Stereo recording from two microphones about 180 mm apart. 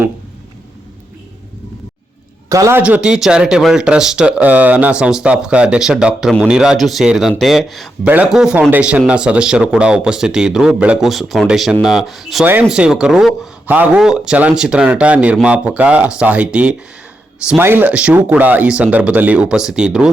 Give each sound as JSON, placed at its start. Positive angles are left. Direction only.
{"t": 2.5, "sound": "speech", "side_deg": -15}